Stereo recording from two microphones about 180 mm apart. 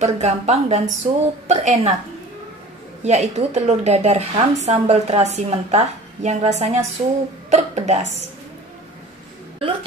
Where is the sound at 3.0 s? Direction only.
40° right (ahead or behind).